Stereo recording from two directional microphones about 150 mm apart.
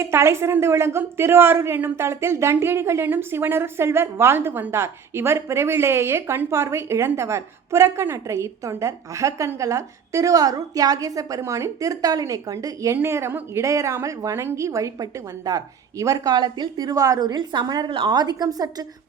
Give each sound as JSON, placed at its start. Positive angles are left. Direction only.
{"t": 0.0, "sound": "speech", "side_deg": -15}